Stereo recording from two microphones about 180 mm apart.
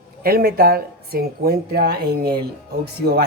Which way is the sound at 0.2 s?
55° right (ahead or behind).